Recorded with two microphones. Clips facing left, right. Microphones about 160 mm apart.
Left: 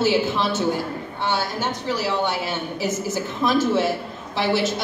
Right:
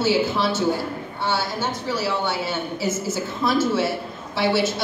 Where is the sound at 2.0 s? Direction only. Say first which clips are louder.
Even; 15° left (ahead or behind).